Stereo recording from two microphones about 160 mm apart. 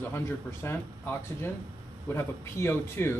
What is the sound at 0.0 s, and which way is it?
Speech, 15° left (ahead or behind).